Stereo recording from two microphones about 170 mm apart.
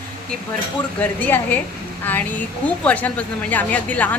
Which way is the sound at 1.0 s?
10° left (ahead or behind).